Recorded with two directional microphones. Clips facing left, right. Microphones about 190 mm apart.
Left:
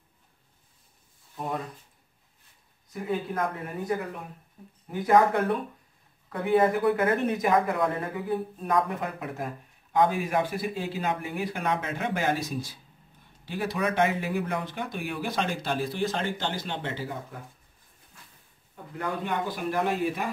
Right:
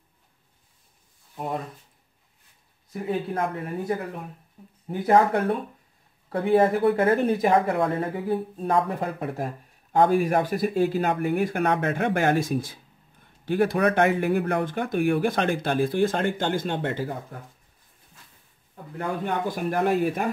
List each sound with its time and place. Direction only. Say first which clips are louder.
1.3 s speech: right 2 dB; 25° right (ahead or behind)
2.9 s a woman's voice: right 3 dB; 30° right (ahead or behind)
10.0 s speech: right 5 dB; 45° right (ahead or behind)
19.2 s speech: right 4 dB; 50° right (ahead or behind)